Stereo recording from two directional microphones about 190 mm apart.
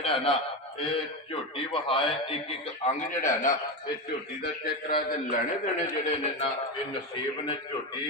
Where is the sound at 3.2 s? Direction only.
40° left (ahead or behind).